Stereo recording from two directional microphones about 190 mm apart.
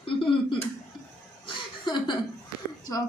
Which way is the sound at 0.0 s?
25° left (ahead or behind).